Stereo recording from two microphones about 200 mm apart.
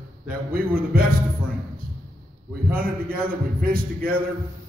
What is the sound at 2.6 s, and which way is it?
A man's voice, 45° right (ahead or behind).